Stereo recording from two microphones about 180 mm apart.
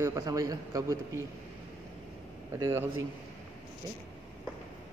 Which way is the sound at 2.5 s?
20° right (ahead or behind).